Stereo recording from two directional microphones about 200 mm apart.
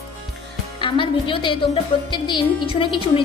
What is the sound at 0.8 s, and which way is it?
A woman's voice, 25° left (ahead or behind).